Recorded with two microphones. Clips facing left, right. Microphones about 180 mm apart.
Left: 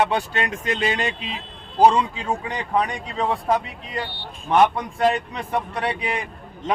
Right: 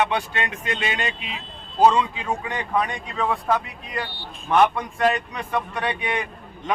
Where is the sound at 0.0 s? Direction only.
35° left (ahead or behind).